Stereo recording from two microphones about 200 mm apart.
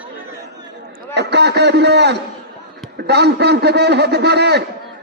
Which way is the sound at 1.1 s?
55° right (ahead or behind).